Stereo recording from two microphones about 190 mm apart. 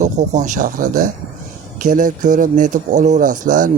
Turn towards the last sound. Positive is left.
turn(degrees=-45)  # may be behind; listen again after turning